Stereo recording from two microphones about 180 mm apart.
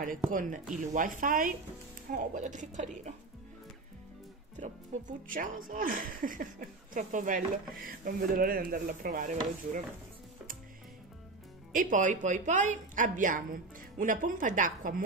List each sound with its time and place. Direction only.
0.3 s speech: 45° right (ahead or behind)
4.6 s speech: 45° right (ahead or behind)
11.7 s speech: 45° right (ahead or behind)